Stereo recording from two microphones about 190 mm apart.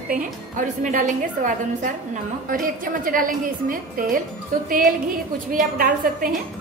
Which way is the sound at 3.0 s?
45° right (ahead or behind).